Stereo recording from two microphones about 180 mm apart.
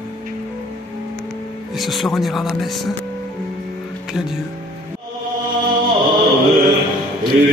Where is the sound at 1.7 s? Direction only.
Centre (ahead or behind).